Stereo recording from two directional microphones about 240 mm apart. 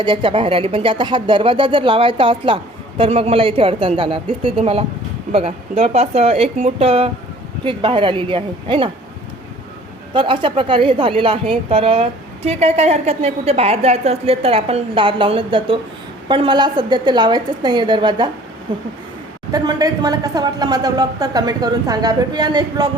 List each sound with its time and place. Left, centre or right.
0.0 s a woman's voice: right
10.2 s a woman's voice: right